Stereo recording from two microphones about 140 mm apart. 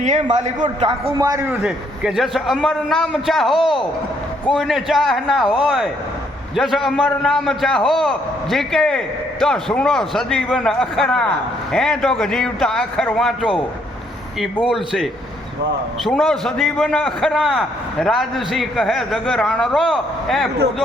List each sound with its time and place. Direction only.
0.0 s a man's voice: 60° right (ahead or behind)
1.2 s a man's voice: 20° right (ahead or behind)
1.6 s a man's voice: 5° right (ahead or behind)
14.6 s a man's voice: centre (ahead or behind)